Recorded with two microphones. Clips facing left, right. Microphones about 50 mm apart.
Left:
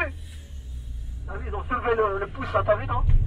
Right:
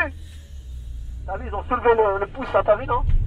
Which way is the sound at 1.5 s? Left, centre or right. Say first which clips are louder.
Right 6 dB; right.